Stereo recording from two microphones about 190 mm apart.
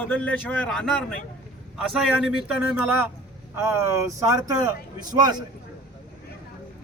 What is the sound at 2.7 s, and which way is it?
Speech, 10° right (ahead or behind).